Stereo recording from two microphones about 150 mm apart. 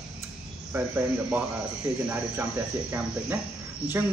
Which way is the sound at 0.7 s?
10° right (ahead or behind).